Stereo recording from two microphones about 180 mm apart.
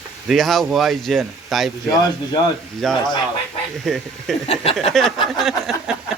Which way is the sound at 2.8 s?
Centre (ahead or behind).